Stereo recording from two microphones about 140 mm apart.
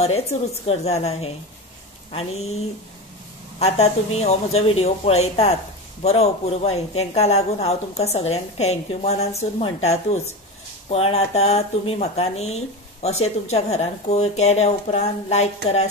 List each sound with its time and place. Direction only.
0.0 s speech: 50° left (ahead or behind)
3.5 s speech: 50° left (ahead or behind)